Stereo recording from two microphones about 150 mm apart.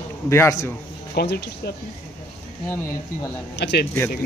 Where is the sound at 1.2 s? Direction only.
90° left.